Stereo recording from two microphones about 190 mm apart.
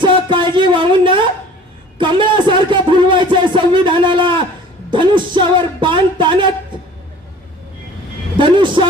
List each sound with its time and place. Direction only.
0.0 s a sound: 25° right (ahead or behind)
2.0 s music: 25° right (ahead or behind)
8.4 s vehicle: 25° right (ahead or behind)